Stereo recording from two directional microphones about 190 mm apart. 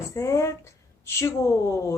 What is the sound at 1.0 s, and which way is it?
Speech, 15° left (ahead or behind).